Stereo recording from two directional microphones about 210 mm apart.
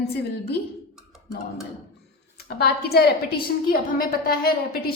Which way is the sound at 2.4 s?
50° left (ahead or behind).